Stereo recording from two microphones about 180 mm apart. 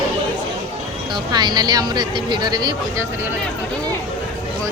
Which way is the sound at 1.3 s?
25° right (ahead or behind).